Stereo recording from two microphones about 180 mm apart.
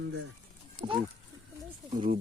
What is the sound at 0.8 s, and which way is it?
Speech, 25° right (ahead or behind).